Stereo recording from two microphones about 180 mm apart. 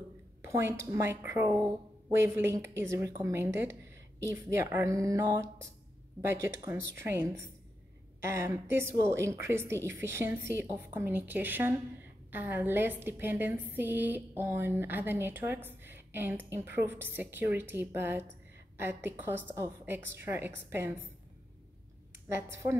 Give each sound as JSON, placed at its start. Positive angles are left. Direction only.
{"t": 0.4, "sound": "a woman's voice", "side_deg": -15}
{"t": 22.3, "sound": "a woman's voice", "side_deg": -15}